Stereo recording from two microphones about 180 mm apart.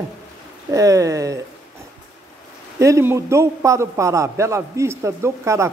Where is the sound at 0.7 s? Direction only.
20° right (ahead or behind).